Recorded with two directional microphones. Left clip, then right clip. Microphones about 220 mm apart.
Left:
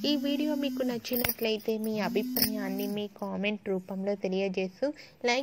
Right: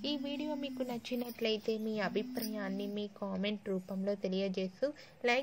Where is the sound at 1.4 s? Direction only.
15° left (ahead or behind).